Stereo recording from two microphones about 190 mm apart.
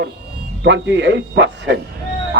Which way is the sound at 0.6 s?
70° right (ahead or behind).